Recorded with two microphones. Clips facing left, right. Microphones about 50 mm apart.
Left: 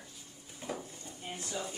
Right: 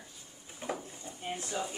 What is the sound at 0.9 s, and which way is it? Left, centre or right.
Drawer open or close, right.